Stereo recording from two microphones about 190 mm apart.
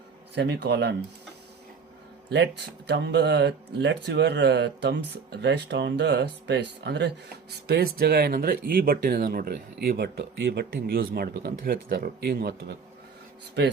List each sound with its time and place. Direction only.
0.3 s speech: 65° right (ahead or behind)
2.3 s speech: 65° right (ahead or behind)